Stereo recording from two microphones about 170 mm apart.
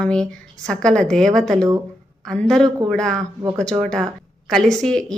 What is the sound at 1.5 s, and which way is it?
Speech, 20° right (ahead or behind).